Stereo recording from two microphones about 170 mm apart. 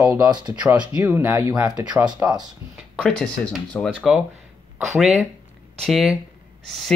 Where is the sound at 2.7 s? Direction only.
Centre (ahead or behind).